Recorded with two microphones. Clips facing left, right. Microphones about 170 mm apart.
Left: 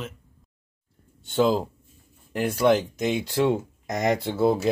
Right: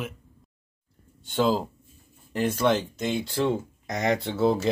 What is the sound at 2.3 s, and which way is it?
Speech, 10° left (ahead or behind).